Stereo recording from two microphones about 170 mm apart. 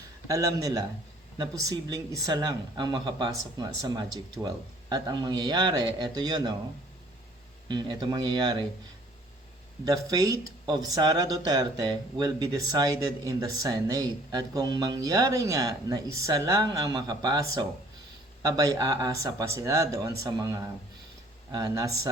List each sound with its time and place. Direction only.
0.3 s speech: 20° right (ahead or behind)
7.7 s speech: 25° right (ahead or behind)
9.8 s speech: 20° right (ahead or behind)
18.4 s speech: 20° right (ahead or behind)